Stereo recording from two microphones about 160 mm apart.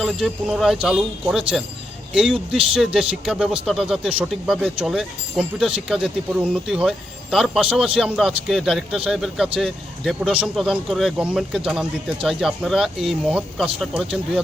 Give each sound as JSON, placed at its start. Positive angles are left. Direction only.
{"t": 0.0, "sound": "speech", "side_deg": -5}